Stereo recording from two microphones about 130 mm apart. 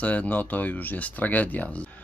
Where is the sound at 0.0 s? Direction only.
10° left (ahead or behind).